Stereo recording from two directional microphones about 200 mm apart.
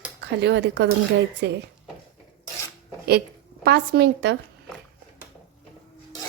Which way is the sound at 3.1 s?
50° right (ahead or behind).